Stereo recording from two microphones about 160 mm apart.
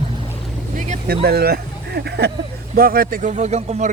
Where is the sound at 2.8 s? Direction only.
65° right (ahead or behind); by 3.9 s 45° right (ahead or behind).